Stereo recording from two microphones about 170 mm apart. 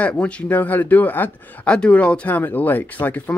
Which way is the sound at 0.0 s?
5° left (ahead or behind).